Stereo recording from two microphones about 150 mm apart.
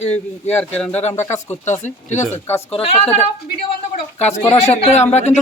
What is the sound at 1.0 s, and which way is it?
A woman's voice, 50° left (ahead or behind).